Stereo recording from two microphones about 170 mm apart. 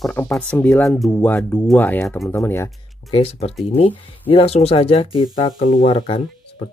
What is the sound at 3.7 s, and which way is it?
Speech, 35° left (ahead or behind).